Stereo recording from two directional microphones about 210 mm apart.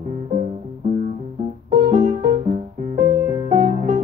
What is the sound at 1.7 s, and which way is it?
Music, 35° right (ahead or behind).